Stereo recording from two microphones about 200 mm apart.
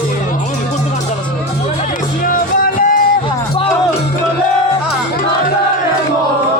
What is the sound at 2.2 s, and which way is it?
Music, 45° left (ahead or behind).